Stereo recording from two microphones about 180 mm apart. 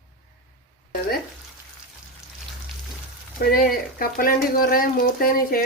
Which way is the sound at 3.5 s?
55° left (ahead or behind).